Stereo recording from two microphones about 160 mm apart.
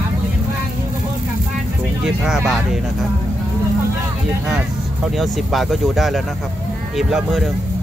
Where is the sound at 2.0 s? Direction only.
5° right (ahead or behind).